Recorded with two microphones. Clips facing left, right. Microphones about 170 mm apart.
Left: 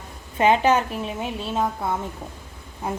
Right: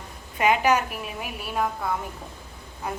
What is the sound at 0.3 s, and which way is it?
A woman's voice, 30° left (ahead or behind).